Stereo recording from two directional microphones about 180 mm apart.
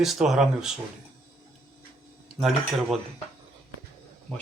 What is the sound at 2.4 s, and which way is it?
Speech, centre (ahead or behind).